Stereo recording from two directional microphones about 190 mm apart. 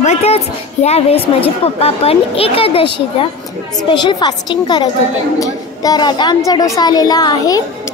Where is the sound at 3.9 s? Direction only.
25° left (ahead or behind).